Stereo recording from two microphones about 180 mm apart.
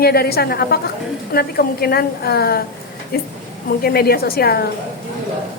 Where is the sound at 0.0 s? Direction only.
60° left (ahead or behind).